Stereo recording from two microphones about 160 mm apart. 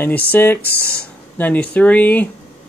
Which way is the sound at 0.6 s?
75° left (ahead or behind).